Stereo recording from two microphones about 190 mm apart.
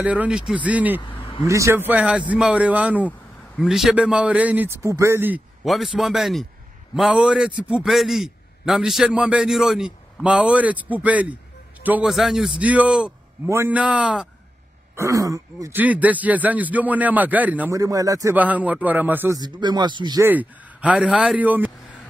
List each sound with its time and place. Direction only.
0.0 s a man's voice: 5° right (ahead or behind)
1.0 s vehicle: 25° left (ahead or behind)
1.4 s speech: 15° right (ahead or behind)
3.1 s speech: centre (ahead or behind)
5.6 s a man's voice: centre (ahead or behind)
15.0 s speech: 15° right (ahead or behind)
20.2 s speech: 10° right (ahead or behind)